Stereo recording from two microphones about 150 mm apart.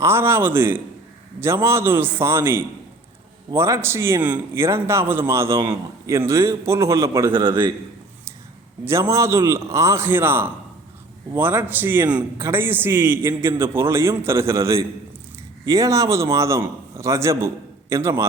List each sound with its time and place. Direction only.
0.0 s a man's voice: 15° right (ahead or behind)
8.8 s a man's voice: 20° right (ahead or behind)